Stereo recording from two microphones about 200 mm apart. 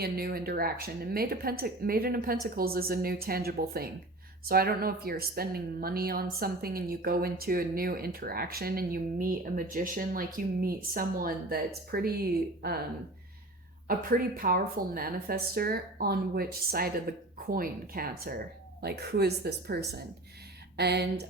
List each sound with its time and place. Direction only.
0.0 s a woman's voice: 50° right (ahead or behind)
13.8 s a woman's voice: 45° right (ahead or behind)